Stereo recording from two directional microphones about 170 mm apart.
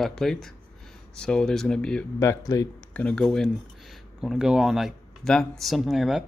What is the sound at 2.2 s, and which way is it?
Speech, 20° left (ahead or behind).